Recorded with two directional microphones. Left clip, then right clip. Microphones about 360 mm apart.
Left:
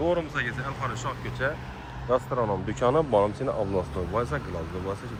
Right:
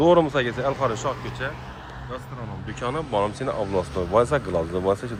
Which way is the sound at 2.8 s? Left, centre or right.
Centre.